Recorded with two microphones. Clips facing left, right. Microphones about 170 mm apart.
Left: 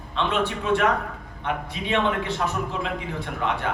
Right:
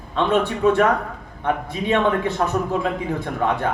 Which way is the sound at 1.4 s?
40° right (ahead or behind).